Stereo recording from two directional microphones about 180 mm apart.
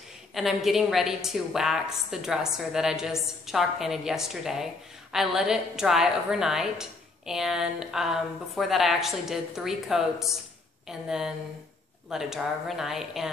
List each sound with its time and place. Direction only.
0.3 s a woman's voice: centre (ahead or behind)